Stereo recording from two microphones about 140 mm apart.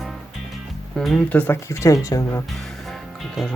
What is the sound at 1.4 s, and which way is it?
Speech, 15° left (ahead or behind).